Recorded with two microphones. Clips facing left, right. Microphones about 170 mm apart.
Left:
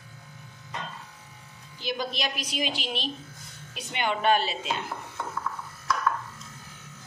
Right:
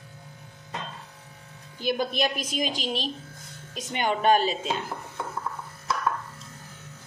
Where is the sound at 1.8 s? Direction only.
50° right (ahead or behind).